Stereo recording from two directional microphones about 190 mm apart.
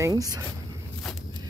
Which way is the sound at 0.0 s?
20° right (ahead or behind).